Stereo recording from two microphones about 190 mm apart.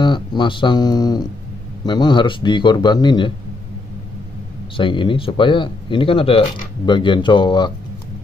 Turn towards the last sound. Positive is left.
turn(degrees=25)  # may be behind; listen again after turning